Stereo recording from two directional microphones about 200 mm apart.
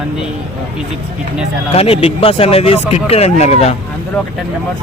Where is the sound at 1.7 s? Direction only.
30° left (ahead or behind).